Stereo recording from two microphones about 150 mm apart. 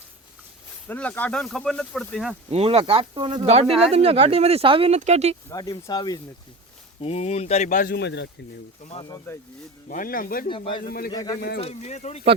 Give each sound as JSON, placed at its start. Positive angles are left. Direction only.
{"t": 0.9, "sound": "speech", "side_deg": 10}
{"t": 2.5, "sound": "speech", "side_deg": -40}
{"t": 4.9, "sound": "speech", "side_deg": -50}
{"t": 5.5, "sound": "speech", "side_deg": 25}
{"t": 7.0, "sound": "speech", "side_deg": 45}
{"t": 8.8, "sound": "speech", "side_deg": 45}
{"t": 9.0, "sound": "speech", "side_deg": 20}
{"t": 9.9, "sound": "speech", "side_deg": 70}
{"t": 11.1, "sound": "speech", "side_deg": 25}
{"t": 11.6, "sound": "speech", "side_deg": 45}